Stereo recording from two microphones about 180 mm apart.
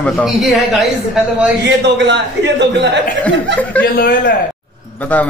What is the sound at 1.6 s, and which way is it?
A man's voice, 80° right.